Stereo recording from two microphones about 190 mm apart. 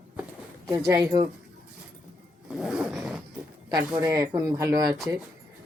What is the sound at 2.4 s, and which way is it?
Zipper, 5° right (ahead or behind).